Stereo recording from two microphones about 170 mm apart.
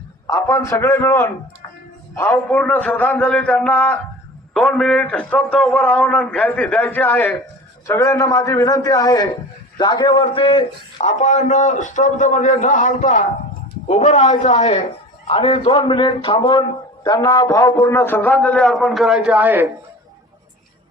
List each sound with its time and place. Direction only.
0.3 s a man's voice: 15° left (ahead or behind); by 19.6 s 10° right (ahead or behind)